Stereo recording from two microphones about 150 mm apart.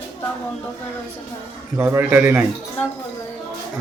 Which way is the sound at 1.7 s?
15° right (ahead or behind).